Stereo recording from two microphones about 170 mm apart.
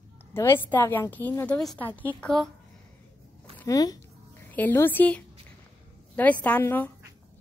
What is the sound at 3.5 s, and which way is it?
Speech, 20° left (ahead or behind).